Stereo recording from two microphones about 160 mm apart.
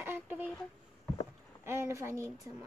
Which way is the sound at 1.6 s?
15° right (ahead or behind).